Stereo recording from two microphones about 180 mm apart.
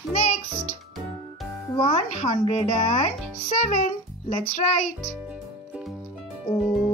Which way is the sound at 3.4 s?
40° left (ahead or behind).